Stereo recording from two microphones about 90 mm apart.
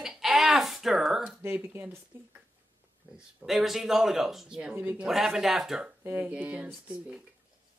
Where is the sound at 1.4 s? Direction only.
25° right (ahead or behind).